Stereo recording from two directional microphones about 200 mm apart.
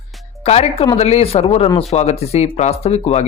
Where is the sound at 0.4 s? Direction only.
30° left (ahead or behind).